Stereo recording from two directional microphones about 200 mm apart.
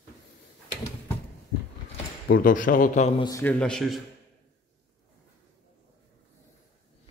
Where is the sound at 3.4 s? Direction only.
5° left (ahead or behind).